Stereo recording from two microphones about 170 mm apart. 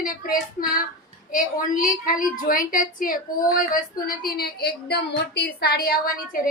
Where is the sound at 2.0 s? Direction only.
55° left (ahead or behind).